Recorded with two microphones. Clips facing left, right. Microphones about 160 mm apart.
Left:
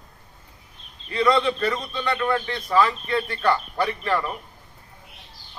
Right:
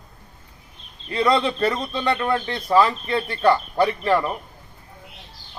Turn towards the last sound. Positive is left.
turn(degrees=-30)  # may be behind; listen again after turning